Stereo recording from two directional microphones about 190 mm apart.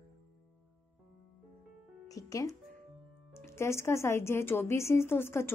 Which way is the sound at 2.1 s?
15° left (ahead or behind).